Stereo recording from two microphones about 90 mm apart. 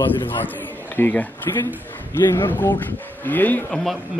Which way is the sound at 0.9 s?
20° left (ahead or behind).